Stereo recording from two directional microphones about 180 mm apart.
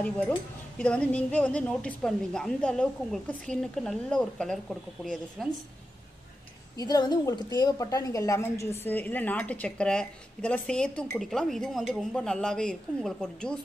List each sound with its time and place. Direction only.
0.0 s a woman's voice: 5° left (ahead or behind)
6.8 s a woman's voice: 20° left (ahead or behind); by 13.6 s 5° left (ahead or behind)